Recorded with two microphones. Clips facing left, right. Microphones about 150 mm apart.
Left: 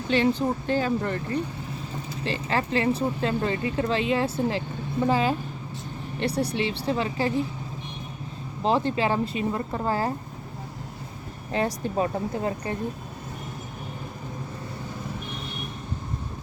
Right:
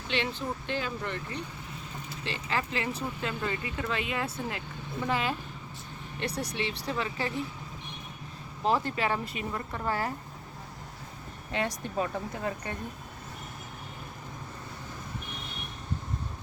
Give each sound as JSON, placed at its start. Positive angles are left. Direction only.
{"t": 0.1, "sound": "speech", "side_deg": 40}
{"t": 8.6, "sound": "speech", "side_deg": 30}
{"t": 11.5, "sound": "speech", "side_deg": 35}